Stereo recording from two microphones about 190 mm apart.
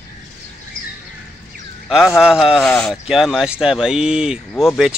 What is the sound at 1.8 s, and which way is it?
Speech, centre (ahead or behind).